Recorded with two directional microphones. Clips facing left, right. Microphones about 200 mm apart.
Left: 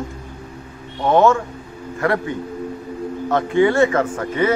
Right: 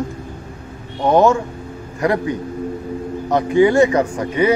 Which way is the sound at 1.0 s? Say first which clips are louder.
Right 1 dB; 15° right (ahead or behind).